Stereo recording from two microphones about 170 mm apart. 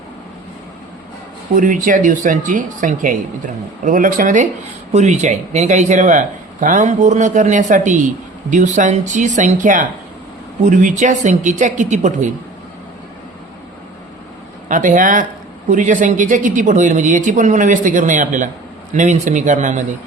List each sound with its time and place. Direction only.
1.5 s speech: 50° right (ahead or behind)
14.7 s speech: 50° right (ahead or behind)